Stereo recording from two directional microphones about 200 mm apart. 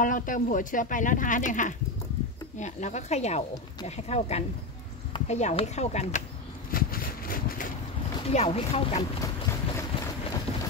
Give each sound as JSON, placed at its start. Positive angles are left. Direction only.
{"t": 0.0, "sound": "speech", "side_deg": 40}
{"t": 6.7, "sound": "vehicle", "side_deg": 45}
{"t": 8.3, "sound": "speech", "side_deg": 30}
{"t": 9.2, "sound": "boat", "side_deg": 15}